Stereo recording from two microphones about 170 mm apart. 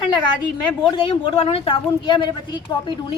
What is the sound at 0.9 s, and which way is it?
Speech, 30° left (ahead or behind).